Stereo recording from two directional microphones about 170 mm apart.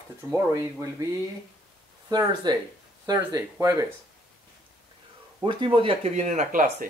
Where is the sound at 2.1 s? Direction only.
25° right (ahead or behind).